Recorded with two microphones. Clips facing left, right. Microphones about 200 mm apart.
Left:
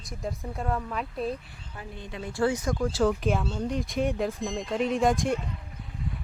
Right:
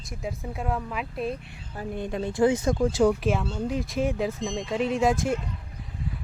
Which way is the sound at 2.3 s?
20° right (ahead or behind).